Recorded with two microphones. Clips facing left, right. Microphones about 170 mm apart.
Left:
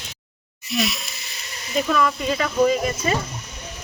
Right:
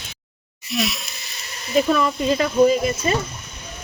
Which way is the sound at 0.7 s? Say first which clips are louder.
Even; centre (ahead or behind).